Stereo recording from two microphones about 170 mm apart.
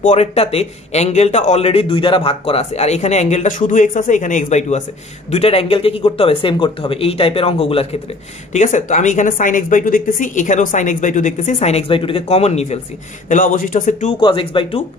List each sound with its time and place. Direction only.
0.0 s speech: 40° left (ahead or behind)
8.5 s speech: 45° left (ahead or behind)
14.2 s speech: 30° left (ahead or behind)